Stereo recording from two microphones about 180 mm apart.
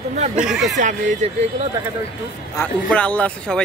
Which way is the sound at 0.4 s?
5° right (ahead or behind).